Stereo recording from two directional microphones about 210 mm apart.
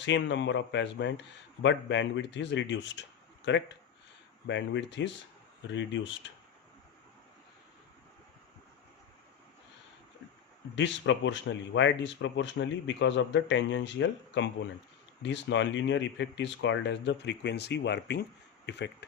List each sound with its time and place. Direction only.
0.0 s speech: 60° left (ahead or behind)
10.8 s speech: 60° left (ahead or behind)